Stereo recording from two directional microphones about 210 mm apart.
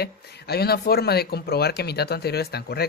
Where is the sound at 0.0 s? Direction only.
50° left (ahead or behind).